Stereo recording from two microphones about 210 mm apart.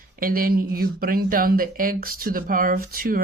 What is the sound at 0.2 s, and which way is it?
Speech, 45° right (ahead or behind).